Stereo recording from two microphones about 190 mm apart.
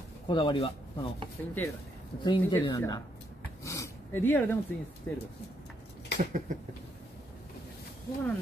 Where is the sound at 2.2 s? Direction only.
20° left (ahead or behind).